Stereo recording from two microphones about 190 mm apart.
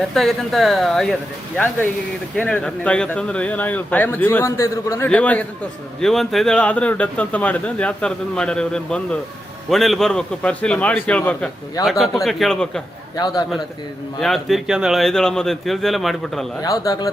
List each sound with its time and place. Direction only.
0.1 s speech: centre (ahead or behind)
13.1 s speech: 20° left (ahead or behind)
14.2 s speech: centre (ahead or behind)
16.6 s speech: 20° left (ahead or behind)